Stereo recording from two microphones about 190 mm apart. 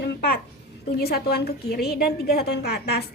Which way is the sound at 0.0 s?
60° left (ahead or behind).